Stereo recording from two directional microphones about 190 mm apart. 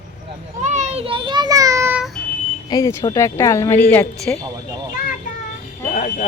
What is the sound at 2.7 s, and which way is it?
A woman's voice, 15° left (ahead or behind).